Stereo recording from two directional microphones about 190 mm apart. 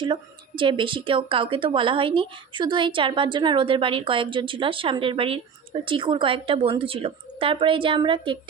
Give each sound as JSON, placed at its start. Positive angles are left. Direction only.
{"t": 0.0, "sound": "a woman's voice", "side_deg": -25}